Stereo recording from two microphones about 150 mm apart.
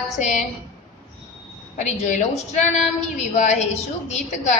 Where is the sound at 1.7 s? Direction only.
50° left (ahead or behind).